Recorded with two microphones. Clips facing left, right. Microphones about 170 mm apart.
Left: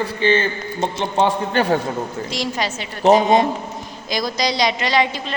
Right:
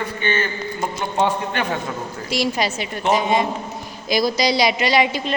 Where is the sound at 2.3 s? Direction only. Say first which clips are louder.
Right 2 dB; 10° right (ahead or behind).